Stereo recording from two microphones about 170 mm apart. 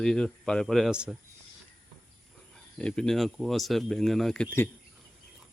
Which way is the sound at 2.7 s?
5° left (ahead or behind).